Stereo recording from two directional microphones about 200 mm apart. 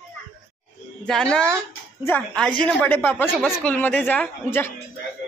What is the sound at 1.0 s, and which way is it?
A woman's voice, 5° left (ahead or behind).